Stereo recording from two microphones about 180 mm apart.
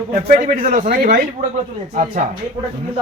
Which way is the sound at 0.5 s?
50° right (ahead or behind).